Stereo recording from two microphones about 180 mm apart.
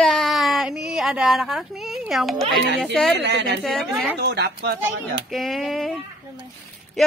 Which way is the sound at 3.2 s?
70° right (ahead or behind).